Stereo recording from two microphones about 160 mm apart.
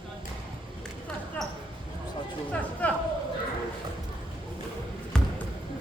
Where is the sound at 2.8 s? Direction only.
10° left (ahead or behind).